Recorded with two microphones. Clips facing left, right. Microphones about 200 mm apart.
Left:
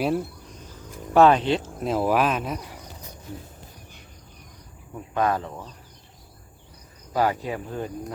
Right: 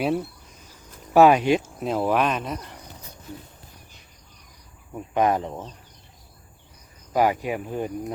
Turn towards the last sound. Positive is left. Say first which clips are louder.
# right 3 dB
turn(degrees=-15)  # may be behind; listen again after turning